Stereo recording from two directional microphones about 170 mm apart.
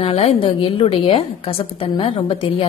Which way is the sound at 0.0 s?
35° left (ahead or behind).